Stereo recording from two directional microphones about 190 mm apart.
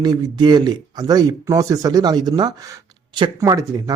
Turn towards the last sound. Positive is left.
turn(degrees=-20)  # may be behind; listen again after turning